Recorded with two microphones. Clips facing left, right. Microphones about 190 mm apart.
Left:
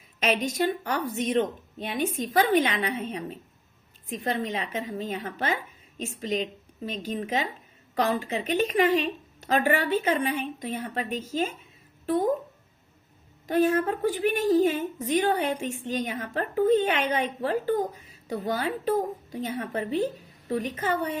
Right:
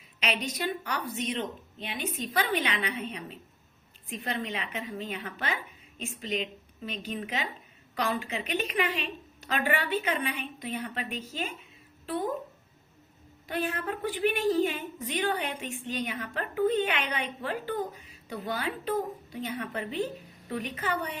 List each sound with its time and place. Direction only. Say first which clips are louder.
0.2 s a woman's voice: left 6 dB; 45° left (ahead or behind)
13.5 s a woman's voice: left 9 dB; 40° left (ahead or behind)